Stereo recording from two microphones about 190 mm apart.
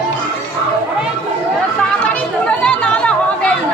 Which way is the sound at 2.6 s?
5° left (ahead or behind).